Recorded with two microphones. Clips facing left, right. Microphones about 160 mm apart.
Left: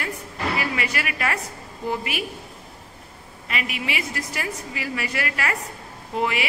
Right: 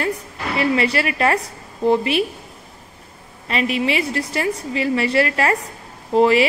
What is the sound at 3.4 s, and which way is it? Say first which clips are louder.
A woman's voice: right 9 dB; 30° right (ahead or behind).